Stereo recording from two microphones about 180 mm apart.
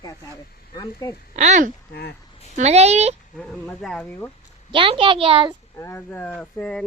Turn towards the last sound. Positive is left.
turn(degrees=5)  # may be behind; listen again after turning